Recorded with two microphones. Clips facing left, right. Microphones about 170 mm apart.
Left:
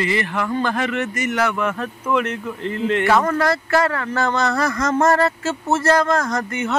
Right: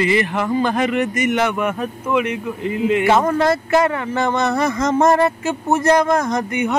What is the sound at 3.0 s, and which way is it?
Speech, 20° right (ahead or behind).